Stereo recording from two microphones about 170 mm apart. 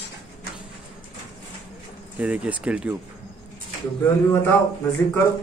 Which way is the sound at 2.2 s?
10° right (ahead or behind).